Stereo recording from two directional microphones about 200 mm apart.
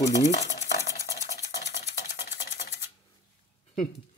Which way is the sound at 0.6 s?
60° left (ahead or behind).